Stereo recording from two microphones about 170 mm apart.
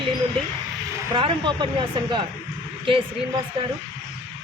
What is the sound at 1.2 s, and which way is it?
Speech, 30° right (ahead or behind).